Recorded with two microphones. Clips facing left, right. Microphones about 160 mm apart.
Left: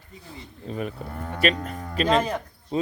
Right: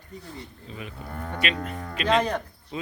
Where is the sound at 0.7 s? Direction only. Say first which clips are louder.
Left 8 dB; 45° left (ahead or behind).